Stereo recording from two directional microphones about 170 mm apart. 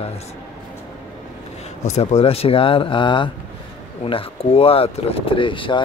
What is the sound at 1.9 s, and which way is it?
Speech, 40° left (ahead or behind).